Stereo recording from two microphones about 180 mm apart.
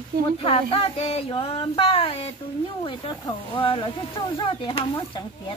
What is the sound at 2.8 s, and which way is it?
Speech, 30° left (ahead or behind).